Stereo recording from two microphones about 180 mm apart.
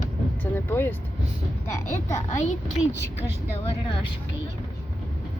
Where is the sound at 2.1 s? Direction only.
40° left (ahead or behind).